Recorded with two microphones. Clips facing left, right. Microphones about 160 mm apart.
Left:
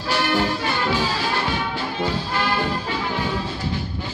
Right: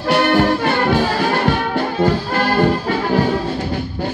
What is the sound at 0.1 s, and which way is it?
Music, 55° right (ahead or behind).